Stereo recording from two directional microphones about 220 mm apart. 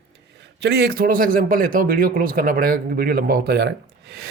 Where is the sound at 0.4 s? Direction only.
50° right (ahead or behind).